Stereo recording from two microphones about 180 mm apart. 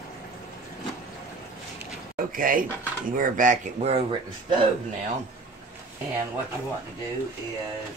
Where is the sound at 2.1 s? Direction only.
50° right (ahead or behind).